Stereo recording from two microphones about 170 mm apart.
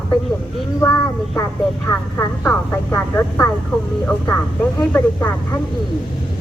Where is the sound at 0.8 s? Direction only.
15° left (ahead or behind).